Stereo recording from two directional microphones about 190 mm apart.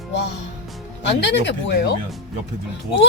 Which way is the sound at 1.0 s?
65° left (ahead or behind).